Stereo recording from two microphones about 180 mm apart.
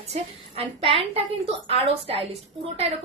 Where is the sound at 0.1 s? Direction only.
35° right (ahead or behind).